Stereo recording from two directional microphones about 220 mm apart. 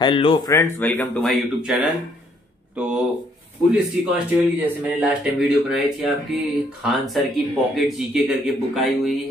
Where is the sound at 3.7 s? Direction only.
5° right (ahead or behind).